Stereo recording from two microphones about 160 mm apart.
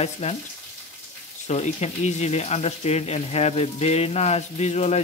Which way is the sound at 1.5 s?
45° left (ahead or behind).